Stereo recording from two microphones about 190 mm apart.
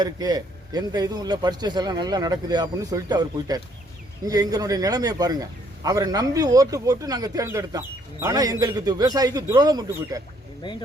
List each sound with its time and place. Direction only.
0.0 s a man's voice: 20° right (ahead or behind)
10.6 s speech: 25° left (ahead or behind)